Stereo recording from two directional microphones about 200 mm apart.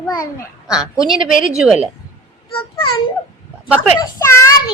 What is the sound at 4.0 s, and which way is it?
Speech, 15° left (ahead or behind).